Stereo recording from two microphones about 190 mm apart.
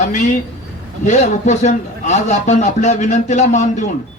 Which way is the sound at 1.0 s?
40° left (ahead or behind).